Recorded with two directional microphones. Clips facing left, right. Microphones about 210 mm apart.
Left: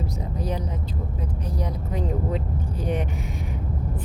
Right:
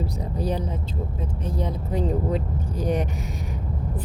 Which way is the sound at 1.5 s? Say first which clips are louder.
Right 3 dB; 30° right (ahead or behind).